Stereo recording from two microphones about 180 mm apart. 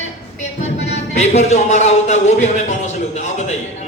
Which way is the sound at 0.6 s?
40° left (ahead or behind).